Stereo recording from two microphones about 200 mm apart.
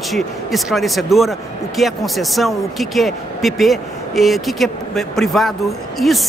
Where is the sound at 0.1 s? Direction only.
Centre (ahead or behind).